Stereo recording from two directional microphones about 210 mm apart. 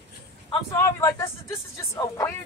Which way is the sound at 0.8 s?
10° left (ahead or behind).